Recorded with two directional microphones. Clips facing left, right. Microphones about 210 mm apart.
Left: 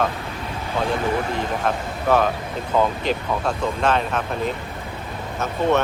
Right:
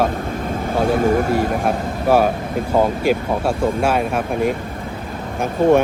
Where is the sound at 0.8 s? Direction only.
45° right (ahead or behind).